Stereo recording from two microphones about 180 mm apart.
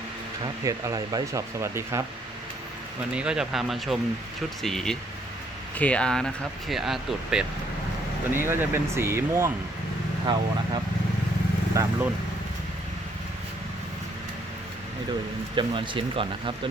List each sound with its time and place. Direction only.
0.4 s speech: 20° right (ahead or behind)
3.2 s speech: 5° right (ahead or behind)
10.3 s speech: 25° right (ahead or behind)
11.8 s speech: 15° right (ahead or behind)
15.5 s speech: 25° right (ahead or behind)